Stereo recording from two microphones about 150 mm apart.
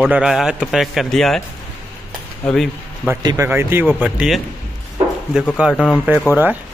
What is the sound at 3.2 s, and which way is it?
Speech, 20° right (ahead or behind).